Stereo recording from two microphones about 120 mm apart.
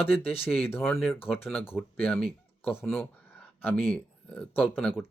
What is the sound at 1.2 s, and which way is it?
Speech, 20° left (ahead or behind).